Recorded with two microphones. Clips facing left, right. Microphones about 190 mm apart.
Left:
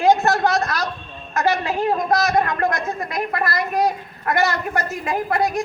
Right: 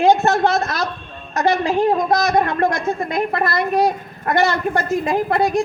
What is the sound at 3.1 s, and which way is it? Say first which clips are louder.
A woman's voice: right 2 dB; 30° right (ahead or behind).